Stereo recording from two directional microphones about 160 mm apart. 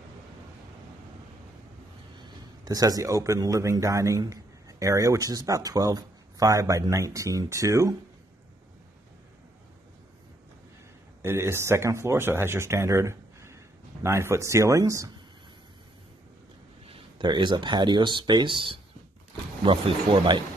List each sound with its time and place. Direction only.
2.2 s speech: 25° right (ahead or behind)
11.2 s speech: 15° right (ahead or behind)
16.8 s speech: 30° right (ahead or behind)